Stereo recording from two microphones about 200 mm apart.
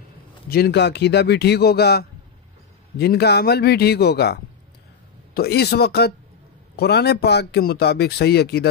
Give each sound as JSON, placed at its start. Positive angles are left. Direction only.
{"t": 0.5, "sound": "speech", "side_deg": 55}